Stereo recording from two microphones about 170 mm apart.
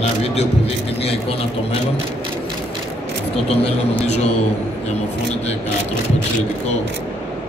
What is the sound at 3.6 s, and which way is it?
Speech, 40° left (ahead or behind).